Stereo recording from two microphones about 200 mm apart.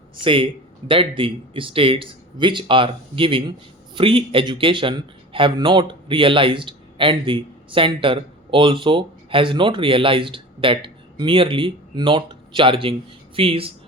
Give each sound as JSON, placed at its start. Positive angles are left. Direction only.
{"t": 0.2, "sound": "a man's voice", "side_deg": -25}